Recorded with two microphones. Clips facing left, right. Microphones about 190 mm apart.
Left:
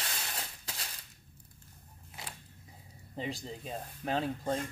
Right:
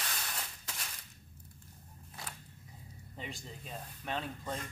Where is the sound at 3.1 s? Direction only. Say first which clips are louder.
Left 7 dB; 35° left (ahead or behind).